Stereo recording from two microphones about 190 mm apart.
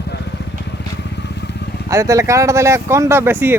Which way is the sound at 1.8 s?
15° right (ahead or behind).